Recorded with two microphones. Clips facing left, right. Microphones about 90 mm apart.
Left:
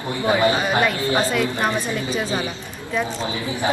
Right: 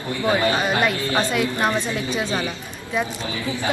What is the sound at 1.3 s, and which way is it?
Speech, centre (ahead or behind).